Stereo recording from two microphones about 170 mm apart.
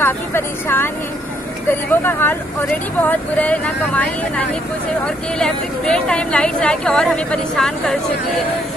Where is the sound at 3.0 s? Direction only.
10° left (ahead or behind).